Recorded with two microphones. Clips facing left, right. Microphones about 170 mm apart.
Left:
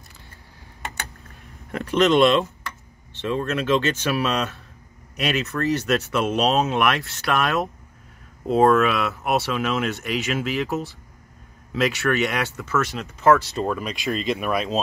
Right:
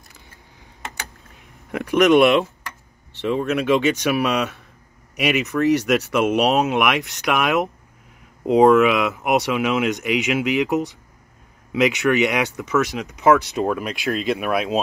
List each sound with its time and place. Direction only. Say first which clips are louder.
1.7 s speech: right 4 dB; 15° right (ahead or behind)